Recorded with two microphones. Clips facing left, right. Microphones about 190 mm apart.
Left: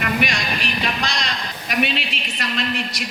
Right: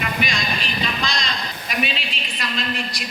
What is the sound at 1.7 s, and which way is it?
A woman's voice, 70° left (ahead or behind).